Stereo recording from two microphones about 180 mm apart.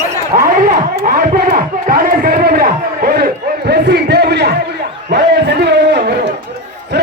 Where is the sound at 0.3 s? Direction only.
50° right (ahead or behind).